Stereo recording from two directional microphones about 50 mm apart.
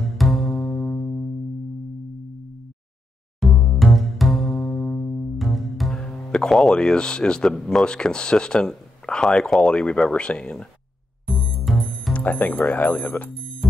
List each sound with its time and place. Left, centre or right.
0.2 s music: centre
3.3 s music: centre
5.9 s speech: centre
11.2 s music: centre
12.1 s speech: left